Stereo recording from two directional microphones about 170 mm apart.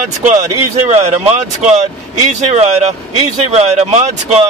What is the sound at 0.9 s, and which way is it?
Speech, 40° right (ahead or behind).